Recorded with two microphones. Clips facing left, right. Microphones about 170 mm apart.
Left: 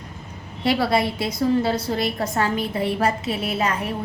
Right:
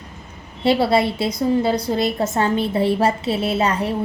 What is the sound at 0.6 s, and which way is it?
A woman's voice, 25° right (ahead or behind).